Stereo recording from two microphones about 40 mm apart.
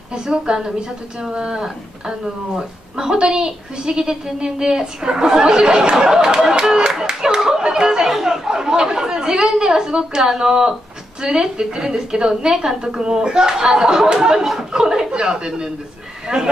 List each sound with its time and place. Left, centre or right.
0.1 s a woman's voice: centre
3.0 s a woman's voice: centre
7.3 s a sound: centre
8.1 s chatter: centre
8.5 s a woman's voice: centre